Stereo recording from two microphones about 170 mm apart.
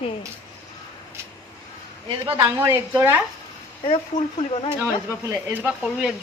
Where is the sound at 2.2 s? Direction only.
20° right (ahead or behind).